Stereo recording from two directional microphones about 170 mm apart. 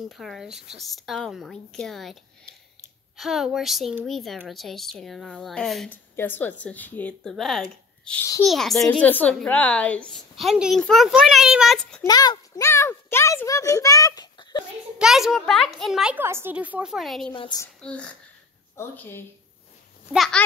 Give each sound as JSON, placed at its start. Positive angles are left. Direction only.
{"t": 0.1, "sound": "a woman's voice", "side_deg": 0}
{"t": 3.2, "sound": "a woman's voice", "side_deg": 0}
{"t": 12.0, "sound": "a woman's voice", "side_deg": 20}
{"t": 15.0, "sound": "a woman's voice", "side_deg": -5}
{"t": 17.3, "sound": "a woman's voice", "side_deg": 25}
{"t": 17.8, "sound": "a woman's voice", "side_deg": 5}
{"t": 20.1, "sound": "a woman's voice", "side_deg": 0}